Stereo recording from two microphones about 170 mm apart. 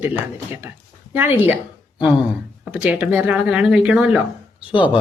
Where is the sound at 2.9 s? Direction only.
5° right (ahead or behind).